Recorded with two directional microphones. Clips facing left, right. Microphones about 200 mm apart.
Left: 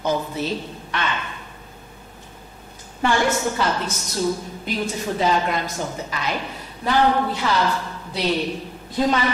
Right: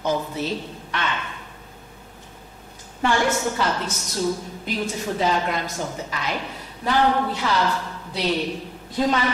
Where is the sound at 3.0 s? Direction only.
15° left (ahead or behind).